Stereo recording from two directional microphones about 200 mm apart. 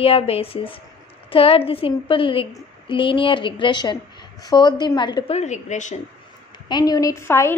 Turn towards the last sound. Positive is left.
turn(degrees=15)  # may be behind; listen again after turning